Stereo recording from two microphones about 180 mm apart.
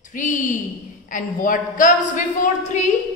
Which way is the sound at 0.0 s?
45° left (ahead or behind).